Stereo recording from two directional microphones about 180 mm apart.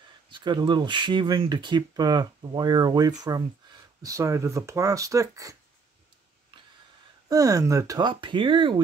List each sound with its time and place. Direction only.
0.3 s speech: 25° right (ahead or behind)
6.5 s a sound: 30° right (ahead or behind)
7.2 s speech: 20° right (ahead or behind)